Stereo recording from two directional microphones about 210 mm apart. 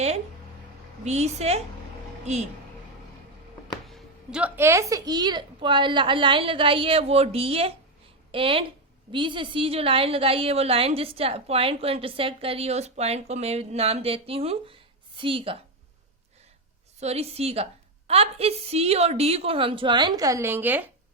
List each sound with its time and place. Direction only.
1.0 s a woman's voice: 30° right (ahead or behind)
3.8 s a woman's voice: centre (ahead or behind); by 15.5 s 25° right (ahead or behind)
17.0 s a woman's voice: 30° right (ahead or behind); by 20.9 s 10° right (ahead or behind)